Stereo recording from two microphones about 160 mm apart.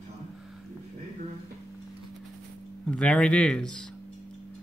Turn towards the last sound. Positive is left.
turn(degrees=5)  # may be behind; listen again after turning